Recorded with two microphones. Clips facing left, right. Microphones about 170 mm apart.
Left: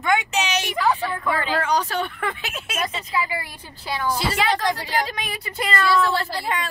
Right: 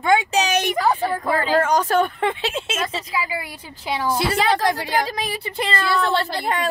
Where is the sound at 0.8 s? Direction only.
35° right (ahead or behind).